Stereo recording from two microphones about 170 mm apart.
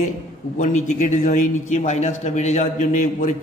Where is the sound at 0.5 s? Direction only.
45° left (ahead or behind).